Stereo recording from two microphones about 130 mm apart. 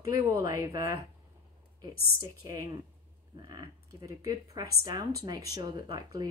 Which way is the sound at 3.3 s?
30° right (ahead or behind).